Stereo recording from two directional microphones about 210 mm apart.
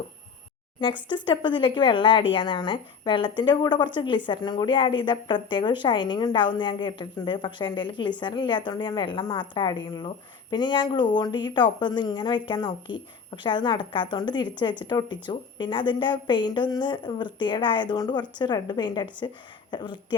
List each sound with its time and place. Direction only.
0.8 s a woman's voice: 20° left (ahead or behind)